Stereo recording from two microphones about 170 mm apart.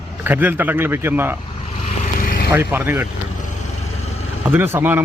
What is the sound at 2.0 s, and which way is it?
Vehicle, 55° left (ahead or behind).